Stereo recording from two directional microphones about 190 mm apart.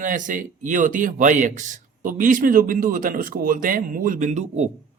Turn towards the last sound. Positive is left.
turn(degrees=-35)  # may be behind; listen again after turning